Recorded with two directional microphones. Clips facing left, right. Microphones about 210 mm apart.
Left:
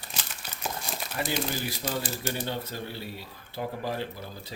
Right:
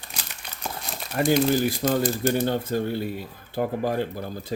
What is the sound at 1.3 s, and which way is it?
Speech, 50° right (ahead or behind).